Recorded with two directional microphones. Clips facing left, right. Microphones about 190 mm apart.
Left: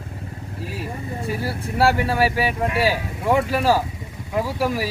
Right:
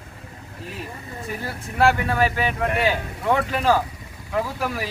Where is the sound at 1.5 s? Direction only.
35° left (ahead or behind).